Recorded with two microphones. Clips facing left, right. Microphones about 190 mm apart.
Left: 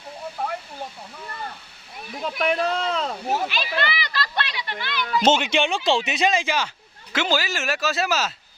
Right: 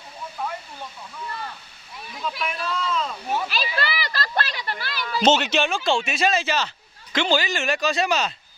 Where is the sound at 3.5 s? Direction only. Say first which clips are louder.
Left 1 dB; 40° right (ahead or behind).